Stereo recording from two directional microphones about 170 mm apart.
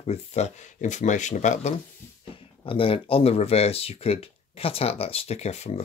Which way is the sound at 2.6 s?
30° left (ahead or behind).